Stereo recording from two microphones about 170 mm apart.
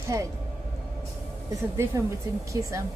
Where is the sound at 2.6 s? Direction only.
20° right (ahead or behind).